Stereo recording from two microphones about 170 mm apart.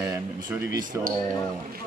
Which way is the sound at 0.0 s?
15° right (ahead or behind).